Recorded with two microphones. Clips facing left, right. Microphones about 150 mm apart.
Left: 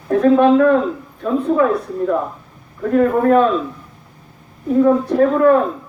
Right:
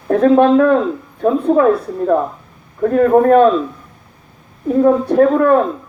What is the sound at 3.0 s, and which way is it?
Speech, 50° right (ahead or behind).